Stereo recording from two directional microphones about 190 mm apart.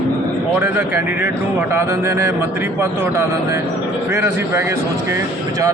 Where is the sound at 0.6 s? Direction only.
5° right (ahead or behind).